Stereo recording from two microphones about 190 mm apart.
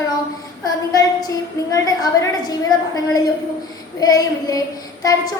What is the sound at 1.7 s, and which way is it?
Speech, 20° left (ahead or behind).